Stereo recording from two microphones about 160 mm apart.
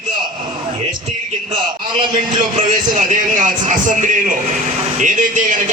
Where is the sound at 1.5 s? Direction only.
30° right (ahead or behind).